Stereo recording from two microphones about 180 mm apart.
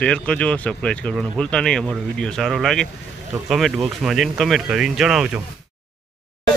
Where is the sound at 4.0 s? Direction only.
Centre (ahead or behind).